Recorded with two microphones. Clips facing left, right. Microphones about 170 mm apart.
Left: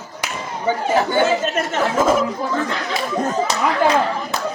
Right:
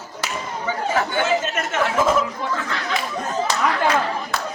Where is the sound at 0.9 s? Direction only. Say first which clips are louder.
Left 4 dB; 35° left (ahead or behind).